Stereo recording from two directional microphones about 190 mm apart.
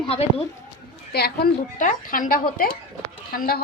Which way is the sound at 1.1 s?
55° left (ahead or behind).